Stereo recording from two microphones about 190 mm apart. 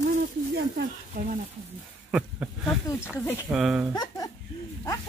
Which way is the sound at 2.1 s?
5° right (ahead or behind).